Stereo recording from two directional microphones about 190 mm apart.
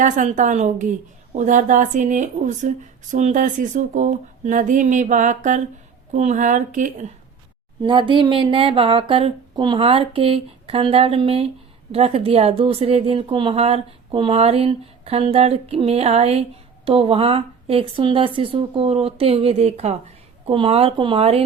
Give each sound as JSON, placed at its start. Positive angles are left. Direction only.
{"t": 0.0, "sound": "speech", "side_deg": -40}
{"t": 7.8, "sound": "speech", "side_deg": -25}